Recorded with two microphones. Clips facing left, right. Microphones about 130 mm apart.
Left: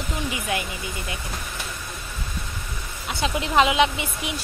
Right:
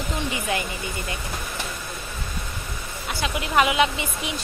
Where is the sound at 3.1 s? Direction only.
25° left (ahead or behind).